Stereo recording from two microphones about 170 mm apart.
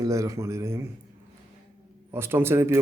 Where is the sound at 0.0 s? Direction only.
20° right (ahead or behind).